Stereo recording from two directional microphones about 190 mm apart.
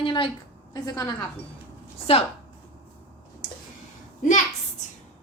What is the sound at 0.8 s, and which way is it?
Speech, 15° left (ahead or behind).